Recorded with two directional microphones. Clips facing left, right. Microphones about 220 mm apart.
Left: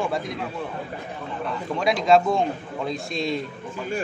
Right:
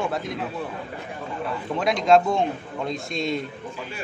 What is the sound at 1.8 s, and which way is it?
A man's voice, centre (ahead or behind).